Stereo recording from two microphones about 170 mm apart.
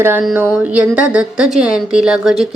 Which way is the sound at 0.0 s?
10° right (ahead or behind).